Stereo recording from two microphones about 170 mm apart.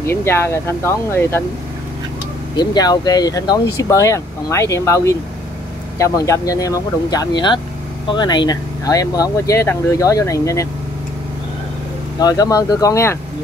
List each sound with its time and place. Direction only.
0.0 s speech: 15° left (ahead or behind)
2.5 s speech: 25° left (ahead or behind)
12.2 s speech: 20° left (ahead or behind)